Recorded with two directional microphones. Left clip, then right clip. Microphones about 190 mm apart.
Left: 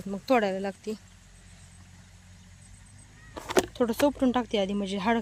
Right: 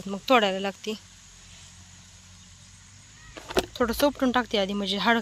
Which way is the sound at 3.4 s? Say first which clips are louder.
Left 2 dB; 20° left (ahead or behind).